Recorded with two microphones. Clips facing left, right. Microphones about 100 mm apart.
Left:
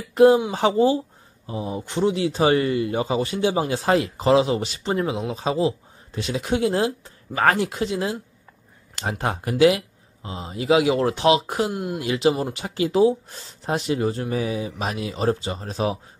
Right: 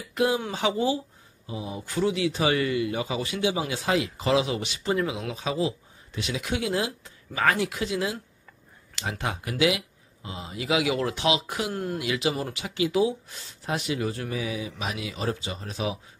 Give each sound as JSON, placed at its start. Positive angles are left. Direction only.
{"t": 0.1, "sound": "speech", "side_deg": 35}
{"t": 9.2, "sound": "speech", "side_deg": 40}
{"t": 11.7, "sound": "speech", "side_deg": 15}
{"t": 12.0, "sound": "speech", "side_deg": 35}